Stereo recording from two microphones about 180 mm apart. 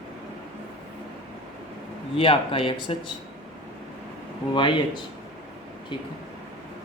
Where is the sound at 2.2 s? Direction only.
30° left (ahead or behind).